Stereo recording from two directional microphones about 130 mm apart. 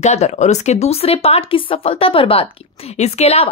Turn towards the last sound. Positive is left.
turn(degrees=55)  # may be behind; listen again after turning